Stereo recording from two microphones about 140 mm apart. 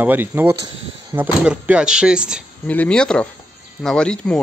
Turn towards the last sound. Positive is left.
turn(degrees=5)  # may be behind; listen again after turning